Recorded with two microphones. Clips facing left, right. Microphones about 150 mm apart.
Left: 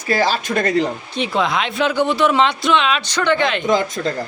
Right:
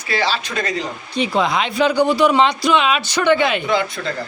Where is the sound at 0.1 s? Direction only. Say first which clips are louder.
Left 3 dB; 45° left (ahead or behind).